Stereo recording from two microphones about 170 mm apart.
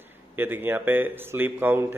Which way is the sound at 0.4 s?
10° right (ahead or behind).